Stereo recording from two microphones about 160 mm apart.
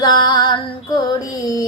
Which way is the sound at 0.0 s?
25° left (ahead or behind).